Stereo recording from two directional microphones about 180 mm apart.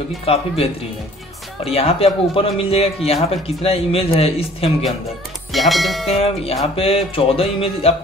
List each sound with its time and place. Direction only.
0.2 s a man's voice: 30° left (ahead or behind)
5.5 s speech: centre (ahead or behind)
6.0 s a man's voice: 35° left (ahead or behind)